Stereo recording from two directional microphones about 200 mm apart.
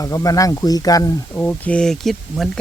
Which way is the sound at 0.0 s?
15° left (ahead or behind).